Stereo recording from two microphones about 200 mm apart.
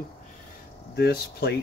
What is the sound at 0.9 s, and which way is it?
Speech, 50° left (ahead or behind).